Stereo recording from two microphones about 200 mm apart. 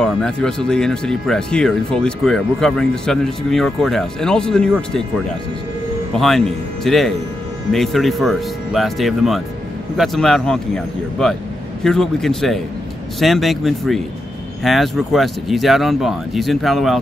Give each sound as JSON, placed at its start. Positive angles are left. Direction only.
{"t": 0.0, "sound": "speech", "side_deg": 5}